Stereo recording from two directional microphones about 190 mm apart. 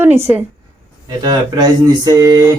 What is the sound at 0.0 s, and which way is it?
Speech, 10° right (ahead or behind).